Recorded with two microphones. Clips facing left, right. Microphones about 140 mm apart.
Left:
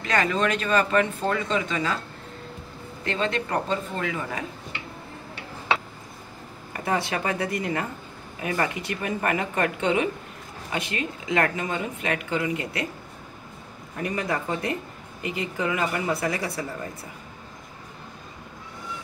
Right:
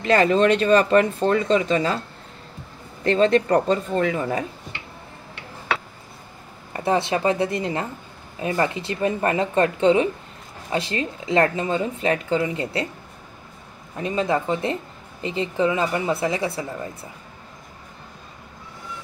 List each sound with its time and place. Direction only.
0.0 s speech: 30° right (ahead or behind)
3.0 s speech: 35° right (ahead or behind)
6.7 s a woman's voice: 25° right (ahead or behind)
14.0 s a woman's voice: 25° right (ahead or behind)